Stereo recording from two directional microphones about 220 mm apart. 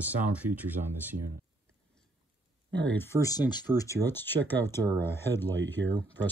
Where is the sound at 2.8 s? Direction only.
10° left (ahead or behind).